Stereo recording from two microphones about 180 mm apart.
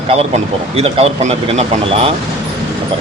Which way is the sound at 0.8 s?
35° right (ahead or behind).